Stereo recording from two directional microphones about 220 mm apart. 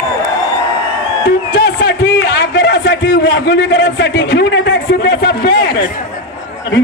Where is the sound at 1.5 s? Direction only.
50° left (ahead or behind).